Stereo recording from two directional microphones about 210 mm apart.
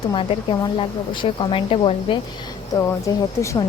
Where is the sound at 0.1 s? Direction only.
25° left (ahead or behind).